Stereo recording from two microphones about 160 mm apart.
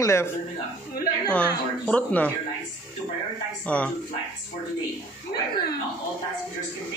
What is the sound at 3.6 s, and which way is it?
Speech, 10° left (ahead or behind).